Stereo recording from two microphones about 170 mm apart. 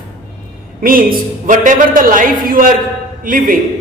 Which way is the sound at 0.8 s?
55° right (ahead or behind).